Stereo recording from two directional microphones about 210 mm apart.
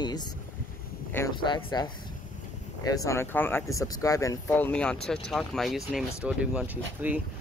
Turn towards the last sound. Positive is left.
turn(degrees=-10)  # may be behind; listen again after turning